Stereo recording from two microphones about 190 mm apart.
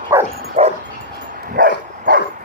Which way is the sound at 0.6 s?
30° right (ahead or behind).